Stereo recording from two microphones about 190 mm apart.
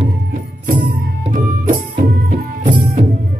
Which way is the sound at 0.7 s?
60° right (ahead or behind).